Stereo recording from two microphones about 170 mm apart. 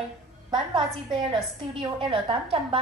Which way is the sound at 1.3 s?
30° right (ahead or behind).